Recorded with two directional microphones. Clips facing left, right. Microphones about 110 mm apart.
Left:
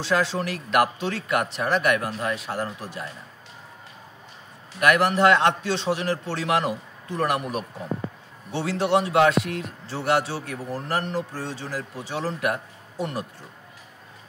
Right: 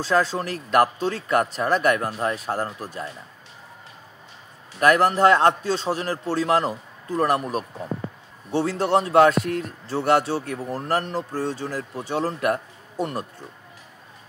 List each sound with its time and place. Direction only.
0.0 s speech: 45° right (ahead or behind)
4.7 s a man's voice: 35° right (ahead or behind)